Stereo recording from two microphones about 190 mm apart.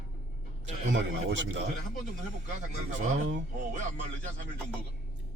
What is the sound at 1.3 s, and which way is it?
Speech, 75° right (ahead or behind).